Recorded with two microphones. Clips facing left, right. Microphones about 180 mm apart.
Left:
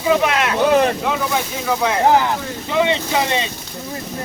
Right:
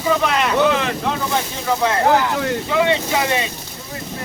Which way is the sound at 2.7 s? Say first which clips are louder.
Left 1 dB; 20° left (ahead or behind).